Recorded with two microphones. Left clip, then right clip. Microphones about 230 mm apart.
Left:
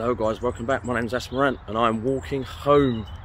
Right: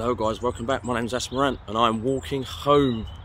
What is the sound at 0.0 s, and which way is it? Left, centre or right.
Speech, right.